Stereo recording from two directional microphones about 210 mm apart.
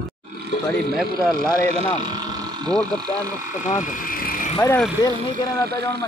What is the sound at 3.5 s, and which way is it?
Vehicle, 35° left (ahead or behind).